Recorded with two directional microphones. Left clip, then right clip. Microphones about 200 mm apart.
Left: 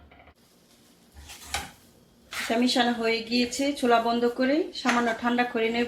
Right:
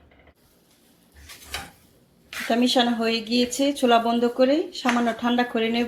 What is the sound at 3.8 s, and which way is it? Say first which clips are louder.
Speech: right 3 dB; 30° right (ahead or behind).